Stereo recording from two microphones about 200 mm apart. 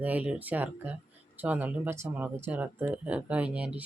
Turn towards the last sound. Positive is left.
turn(degrees=-5)  # may be behind; listen again after turning